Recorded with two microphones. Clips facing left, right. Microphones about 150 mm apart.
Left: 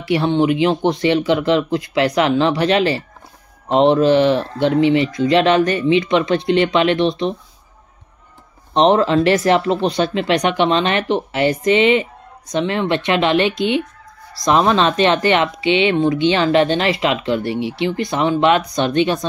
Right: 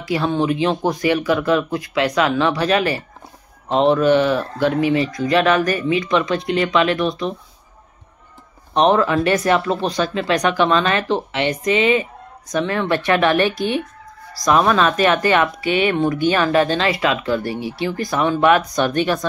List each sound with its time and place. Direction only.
0.0 s speech: 25° left (ahead or behind)
8.7 s speech: 30° left (ahead or behind)